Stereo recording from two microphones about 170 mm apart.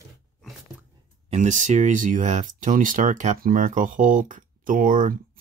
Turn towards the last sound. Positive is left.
turn(degrees=-50)  # may be behind; listen again after turning